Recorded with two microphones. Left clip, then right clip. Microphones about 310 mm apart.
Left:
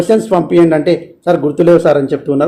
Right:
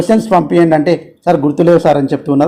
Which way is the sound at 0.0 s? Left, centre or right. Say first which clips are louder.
Even; centre.